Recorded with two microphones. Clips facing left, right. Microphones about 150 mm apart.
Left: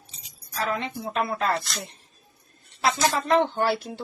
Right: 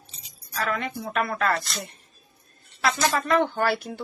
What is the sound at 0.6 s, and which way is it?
Speech, 25° left (ahead or behind).